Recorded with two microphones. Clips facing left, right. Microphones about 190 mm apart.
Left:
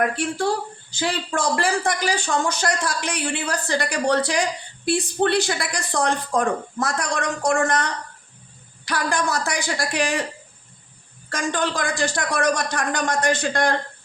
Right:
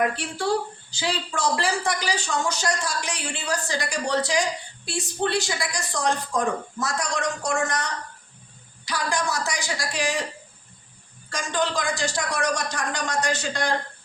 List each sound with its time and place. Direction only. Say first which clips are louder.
0.9 s a man's voice: left 3 dB; 50° left (ahead or behind)
11.3 s a man's voice: left 2 dB; 55° left (ahead or behind)